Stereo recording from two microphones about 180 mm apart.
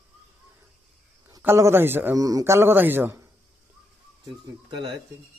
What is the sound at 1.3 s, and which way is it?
A man's voice, 15° right (ahead or behind).